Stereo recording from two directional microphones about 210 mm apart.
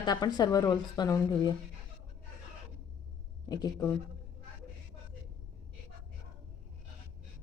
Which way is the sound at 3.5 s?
20° left (ahead or behind).